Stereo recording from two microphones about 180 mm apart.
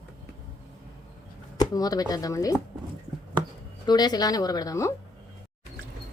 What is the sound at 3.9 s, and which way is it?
Speech, 20° left (ahead or behind).